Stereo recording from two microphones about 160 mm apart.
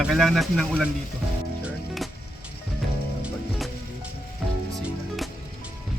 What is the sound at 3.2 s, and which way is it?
Music, centre (ahead or behind).